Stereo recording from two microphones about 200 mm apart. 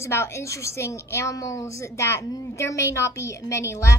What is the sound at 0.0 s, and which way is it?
A woman's voice, 15° left (ahead or behind).